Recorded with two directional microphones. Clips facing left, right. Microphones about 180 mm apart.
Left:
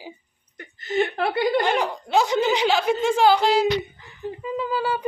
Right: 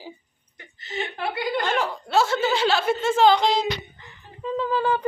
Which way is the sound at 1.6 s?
15° left (ahead or behind).